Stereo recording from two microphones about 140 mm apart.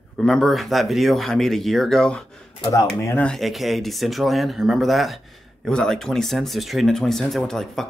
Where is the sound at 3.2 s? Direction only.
Centre (ahead or behind).